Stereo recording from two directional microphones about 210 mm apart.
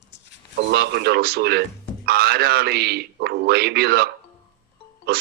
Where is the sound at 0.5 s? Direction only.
55° right (ahead or behind).